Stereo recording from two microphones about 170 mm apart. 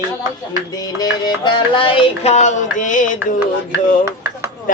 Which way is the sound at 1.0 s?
25° left (ahead or behind).